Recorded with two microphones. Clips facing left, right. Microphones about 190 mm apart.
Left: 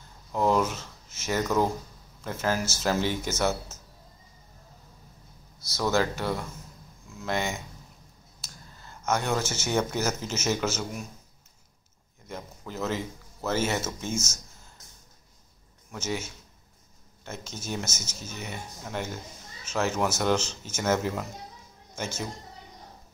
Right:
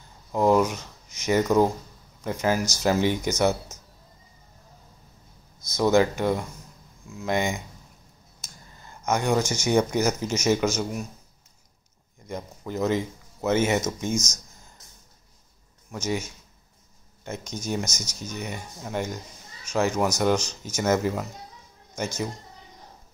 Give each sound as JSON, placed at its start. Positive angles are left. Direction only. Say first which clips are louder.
{"t": 0.3, "sound": "speech", "louder": "right 4 dB", "side_deg": -15}
{"t": 5.7, "sound": "speech", "louder": "right 6 dB", "side_deg": -15}
{"t": 12.3, "sound": "speech", "louder": "right 5 dB", "side_deg": -15}
{"t": 15.9, "sound": "speech", "louder": "right 4 dB", "side_deg": -10}
{"t": 17.2, "sound": "a sound", "louder": "right 5 dB", "side_deg": -15}
{"t": 17.7, "sound": "speech", "louder": "right 4 dB", "side_deg": 5}
{"t": 18.9, "sound": "speech", "louder": "right 4 dB", "side_deg": -10}